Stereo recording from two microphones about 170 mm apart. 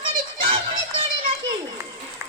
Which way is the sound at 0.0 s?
30° right (ahead or behind).